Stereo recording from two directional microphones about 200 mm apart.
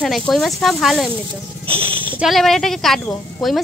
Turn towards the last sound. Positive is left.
turn(degrees=0)  # may be behind; listen again after turning